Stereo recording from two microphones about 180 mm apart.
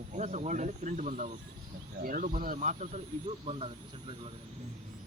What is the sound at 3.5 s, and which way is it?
Speech, 30° right (ahead or behind).